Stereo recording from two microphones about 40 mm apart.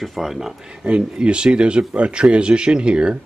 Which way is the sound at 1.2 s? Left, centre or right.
Right.